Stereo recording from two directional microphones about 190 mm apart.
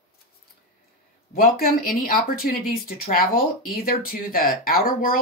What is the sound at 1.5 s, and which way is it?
Speech, 50° left (ahead or behind).